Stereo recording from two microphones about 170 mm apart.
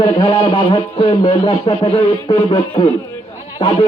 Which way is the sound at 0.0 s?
30° left (ahead or behind).